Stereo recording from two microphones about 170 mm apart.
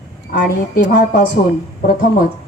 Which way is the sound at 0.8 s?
85° left.